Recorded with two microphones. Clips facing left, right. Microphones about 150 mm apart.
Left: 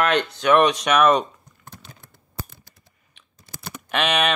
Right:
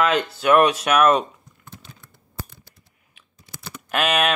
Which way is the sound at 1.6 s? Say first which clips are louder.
Even; 35° left (ahead or behind).